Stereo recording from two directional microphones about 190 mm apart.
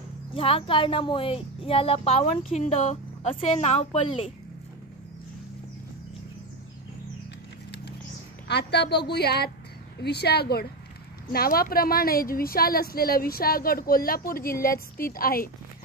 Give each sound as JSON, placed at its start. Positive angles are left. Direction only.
{"t": 0.3, "sound": "speech", "side_deg": 30}
{"t": 8.5, "sound": "a woman's voice", "side_deg": 60}